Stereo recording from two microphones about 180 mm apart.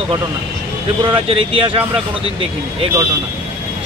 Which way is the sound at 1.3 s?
30° right (ahead or behind).